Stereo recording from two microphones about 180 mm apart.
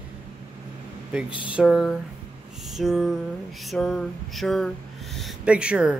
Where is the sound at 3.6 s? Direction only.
5° left (ahead or behind).